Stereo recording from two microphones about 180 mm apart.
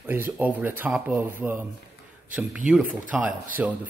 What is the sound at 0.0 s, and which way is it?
Speech, 10° right (ahead or behind).